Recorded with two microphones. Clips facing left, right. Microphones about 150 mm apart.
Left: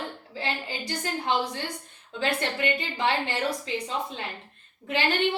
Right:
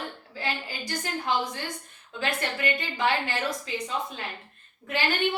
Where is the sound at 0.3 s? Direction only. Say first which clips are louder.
Left 1 dB; 25° left (ahead or behind).